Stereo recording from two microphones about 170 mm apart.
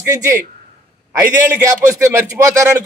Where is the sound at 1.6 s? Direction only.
15° right (ahead or behind).